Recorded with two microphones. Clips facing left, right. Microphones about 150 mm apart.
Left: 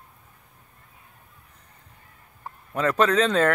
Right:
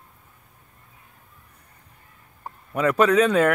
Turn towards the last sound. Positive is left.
turn(degrees=-10)  # may be behind; listen again after turning